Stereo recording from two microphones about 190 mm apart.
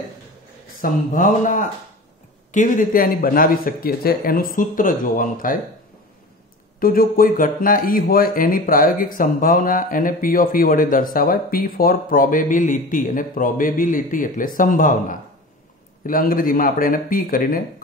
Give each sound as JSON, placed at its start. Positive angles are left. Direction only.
{"t": 0.7, "sound": "speech", "side_deg": 45}
{"t": 6.8, "sound": "speech", "side_deg": 50}